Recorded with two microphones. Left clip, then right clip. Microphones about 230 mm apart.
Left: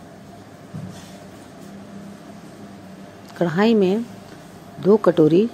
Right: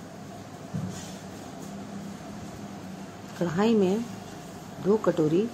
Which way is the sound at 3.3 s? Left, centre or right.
Left.